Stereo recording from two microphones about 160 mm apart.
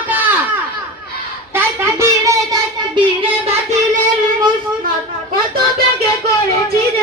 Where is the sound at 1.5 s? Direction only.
15° right (ahead or behind).